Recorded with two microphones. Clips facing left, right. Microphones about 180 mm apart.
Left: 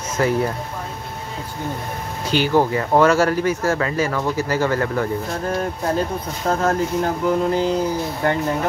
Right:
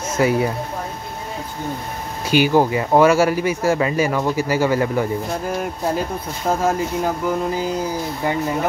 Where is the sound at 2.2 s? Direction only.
10° right (ahead or behind).